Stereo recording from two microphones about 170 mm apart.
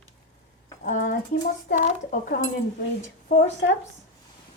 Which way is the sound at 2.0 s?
55° left (ahead or behind).